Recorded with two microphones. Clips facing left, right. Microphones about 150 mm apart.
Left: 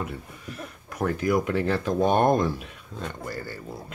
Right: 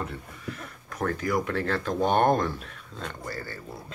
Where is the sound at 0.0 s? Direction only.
15° left (ahead or behind).